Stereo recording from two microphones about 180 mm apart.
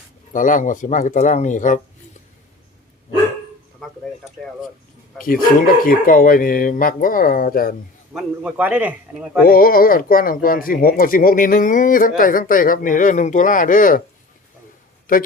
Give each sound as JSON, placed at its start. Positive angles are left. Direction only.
{"t": 0.3, "sound": "speech", "side_deg": 45}
{"t": 5.1, "sound": "speech", "side_deg": 50}
{"t": 8.1, "sound": "a man's voice", "side_deg": -5}
{"t": 9.4, "sound": "speech", "side_deg": 55}
{"t": 15.1, "sound": "speech", "side_deg": 50}